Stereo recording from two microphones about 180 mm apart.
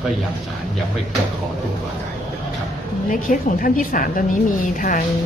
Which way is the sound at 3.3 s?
50° left (ahead or behind).